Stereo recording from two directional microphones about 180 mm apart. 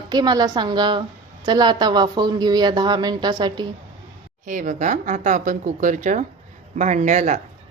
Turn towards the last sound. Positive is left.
turn(degrees=-40)  # may be behind; listen again after turning